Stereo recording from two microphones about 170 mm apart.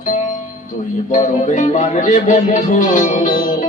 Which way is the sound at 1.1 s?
45° left (ahead or behind).